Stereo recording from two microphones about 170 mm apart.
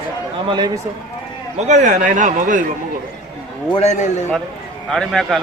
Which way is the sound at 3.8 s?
45° left (ahead or behind).